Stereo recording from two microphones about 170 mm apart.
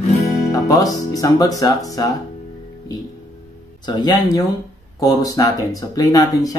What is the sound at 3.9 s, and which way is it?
Speech, 25° left (ahead or behind).